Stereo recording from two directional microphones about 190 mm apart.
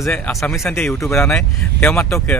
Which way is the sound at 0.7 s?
15° left (ahead or behind).